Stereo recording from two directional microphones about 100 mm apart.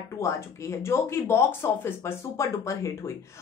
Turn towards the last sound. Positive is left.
turn(degrees=30)  # may be behind; listen again after turning